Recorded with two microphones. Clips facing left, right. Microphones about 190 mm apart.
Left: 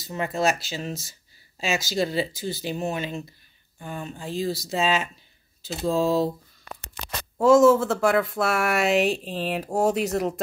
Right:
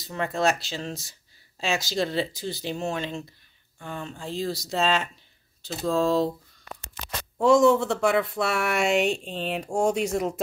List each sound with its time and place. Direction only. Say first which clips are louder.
0.0 s speech: even; 5° left (ahead or behind)
5.7 s speech: left 1 dB; 15° left (ahead or behind)
6.0 s speech: even; 5° left (ahead or behind)
7.3 s speech: left 2 dB; centre (ahead or behind)